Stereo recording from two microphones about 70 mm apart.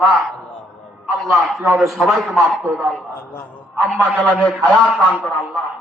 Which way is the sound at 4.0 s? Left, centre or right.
Centre.